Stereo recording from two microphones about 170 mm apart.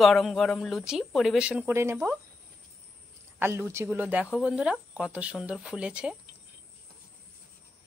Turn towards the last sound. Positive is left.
turn(degrees=-5)  # may be behind; listen again after turning